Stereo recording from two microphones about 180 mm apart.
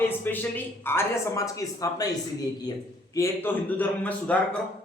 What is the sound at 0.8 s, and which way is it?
A man's voice, 15° left (ahead or behind).